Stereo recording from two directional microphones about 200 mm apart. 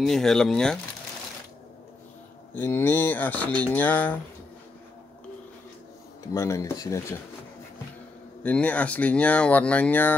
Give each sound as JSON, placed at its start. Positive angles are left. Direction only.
{"t": 0.0, "sound": "speech", "side_deg": 0}
{"t": 2.5, "sound": "speech", "side_deg": 10}
{"t": 6.2, "sound": "speech", "side_deg": 15}
{"t": 8.4, "sound": "speech", "side_deg": 5}